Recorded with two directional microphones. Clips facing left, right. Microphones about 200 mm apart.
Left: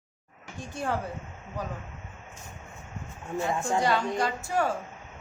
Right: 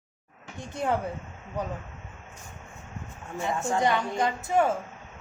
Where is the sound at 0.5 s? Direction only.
20° right (ahead or behind).